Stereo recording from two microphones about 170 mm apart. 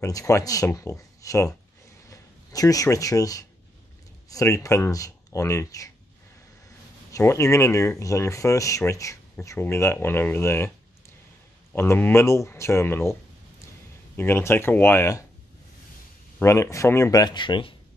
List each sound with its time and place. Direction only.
0.0 s speech: 20° left (ahead or behind)
7.1 s speech: 15° left (ahead or behind)
11.7 s speech: 15° left (ahead or behind)
16.3 s speech: 15° left (ahead or behind)